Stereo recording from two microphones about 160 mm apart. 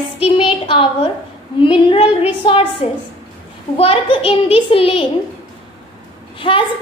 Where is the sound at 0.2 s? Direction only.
30° left (ahead or behind).